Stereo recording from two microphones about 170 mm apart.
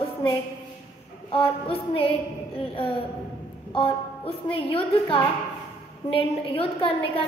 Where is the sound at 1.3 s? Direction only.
35° left (ahead or behind).